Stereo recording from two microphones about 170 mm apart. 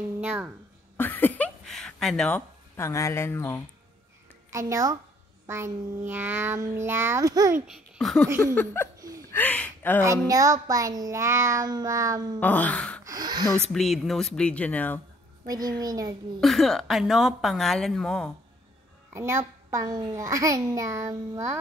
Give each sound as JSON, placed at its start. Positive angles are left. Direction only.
{"t": 0.2, "sound": "speech", "side_deg": -10}
{"t": 0.9, "sound": "a sound", "side_deg": 10}
{"t": 4.5, "sound": "a woman's voice", "side_deg": -15}
{"t": 7.6, "sound": "babbling", "side_deg": -5}
{"t": 9.3, "sound": "speech", "side_deg": 10}
{"t": 10.2, "sound": "a child's voice", "side_deg": -20}
{"t": 12.4, "sound": "gasp", "side_deg": 10}
{"t": 13.0, "sound": "a child's voice", "side_deg": -20}
{"t": 13.7, "sound": "a woman's voice", "side_deg": 0}
{"t": 15.8, "sound": "a child's voice", "side_deg": -20}
{"t": 16.3, "sound": "a woman's voice", "side_deg": 0}
{"t": 19.1, "sound": "a child's voice", "side_deg": -15}